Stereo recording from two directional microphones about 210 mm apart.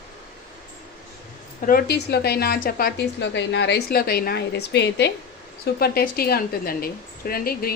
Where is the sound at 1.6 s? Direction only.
45° left (ahead or behind).